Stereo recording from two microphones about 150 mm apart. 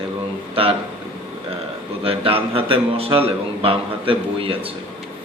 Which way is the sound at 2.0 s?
40° right (ahead or behind).